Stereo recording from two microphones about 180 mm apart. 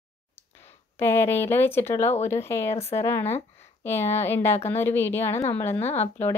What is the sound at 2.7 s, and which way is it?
Speech, 35° left (ahead or behind).